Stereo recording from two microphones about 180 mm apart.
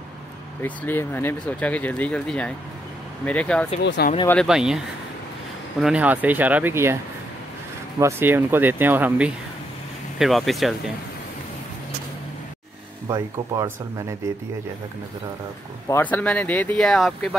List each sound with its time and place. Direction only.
0.6 s speech: 10° left (ahead or behind)
3.8 s speech: 70° left (ahead or behind)
4.5 s speech: 5° right (ahead or behind)
8.0 s speech: 15° right (ahead or behind)
13.1 s speech: 20° right (ahead or behind)
15.9 s speech: 10° left (ahead or behind)